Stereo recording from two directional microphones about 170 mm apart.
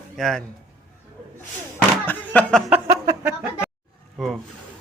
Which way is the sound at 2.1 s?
10° left (ahead or behind).